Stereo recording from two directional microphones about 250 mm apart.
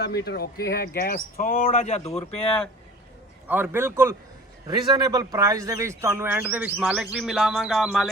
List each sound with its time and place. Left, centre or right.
0.3 s speech: left
3.4 s speech: centre